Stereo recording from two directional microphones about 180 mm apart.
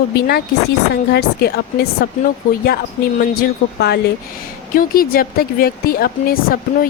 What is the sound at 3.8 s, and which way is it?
Speech, 65° left (ahead or behind).